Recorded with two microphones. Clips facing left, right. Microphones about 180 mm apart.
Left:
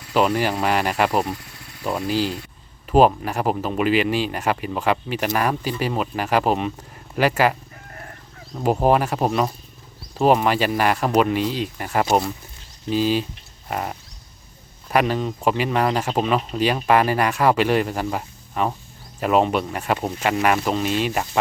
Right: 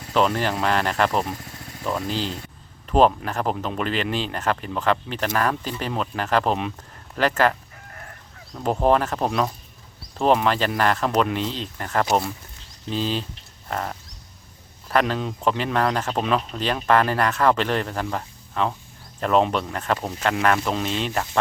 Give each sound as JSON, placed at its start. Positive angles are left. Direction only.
{"t": 0.1, "sound": "speech", "side_deg": 5}
{"t": 1.4, "sound": "cricket", "side_deg": -45}
{"t": 1.8, "sound": "speech", "side_deg": 10}
{"t": 8.5, "sound": "speech", "side_deg": 10}
{"t": 11.1, "sound": "speech", "side_deg": 0}